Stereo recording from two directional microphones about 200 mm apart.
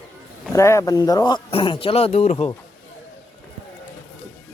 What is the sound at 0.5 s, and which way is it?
Speech, 15° left (ahead or behind).